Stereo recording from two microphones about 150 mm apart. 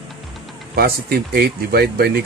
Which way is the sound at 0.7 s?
90° right.